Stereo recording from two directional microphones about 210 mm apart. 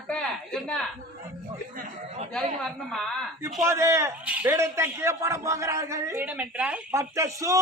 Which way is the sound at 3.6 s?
15° right (ahead or behind).